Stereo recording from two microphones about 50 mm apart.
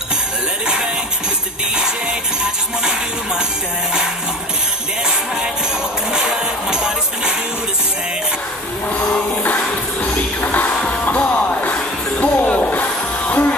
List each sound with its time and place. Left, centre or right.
10.1 s music: left